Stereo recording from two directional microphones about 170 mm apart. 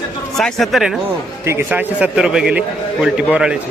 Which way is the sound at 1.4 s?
10° right (ahead or behind).